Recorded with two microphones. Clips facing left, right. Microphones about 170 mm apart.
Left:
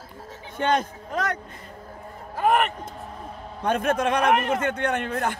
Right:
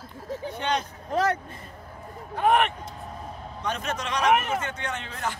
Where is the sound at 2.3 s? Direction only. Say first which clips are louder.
Even; centre (ahead or behind).